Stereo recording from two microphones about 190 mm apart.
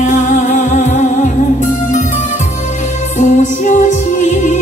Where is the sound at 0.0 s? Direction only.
40° left (ahead or behind).